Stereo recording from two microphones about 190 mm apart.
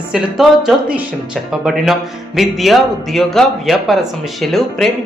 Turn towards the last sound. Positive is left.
turn(degrees=0)  # may be behind; listen again after turning